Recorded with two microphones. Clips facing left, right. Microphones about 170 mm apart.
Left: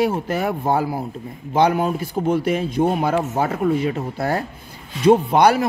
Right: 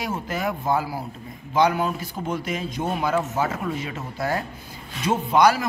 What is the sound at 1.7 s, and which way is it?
Speech, 45° left (ahead or behind).